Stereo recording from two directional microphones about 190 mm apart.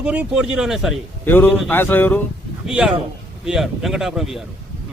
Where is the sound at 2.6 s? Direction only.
Centre (ahead or behind).